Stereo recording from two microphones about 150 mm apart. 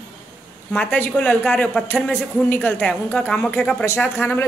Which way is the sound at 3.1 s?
10° left (ahead or behind).